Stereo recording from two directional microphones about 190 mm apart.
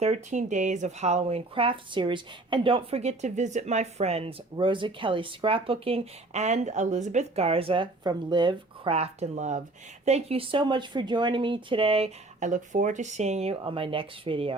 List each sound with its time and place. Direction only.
0.0 s speech: 40° right (ahead or behind)